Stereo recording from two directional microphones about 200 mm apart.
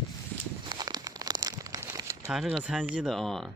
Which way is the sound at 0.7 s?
20° right (ahead or behind).